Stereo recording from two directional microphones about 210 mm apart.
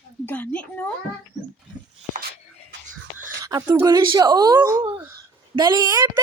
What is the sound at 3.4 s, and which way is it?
Speech, 15° right (ahead or behind).